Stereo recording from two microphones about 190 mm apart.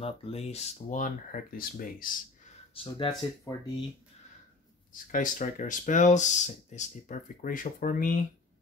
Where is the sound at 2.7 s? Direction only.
25° left (ahead or behind).